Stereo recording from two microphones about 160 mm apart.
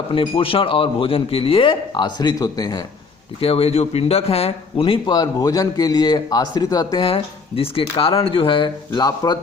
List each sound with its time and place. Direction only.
0.1 s a man's voice: 35° left (ahead or behind)
3.4 s a man's voice: 35° left (ahead or behind)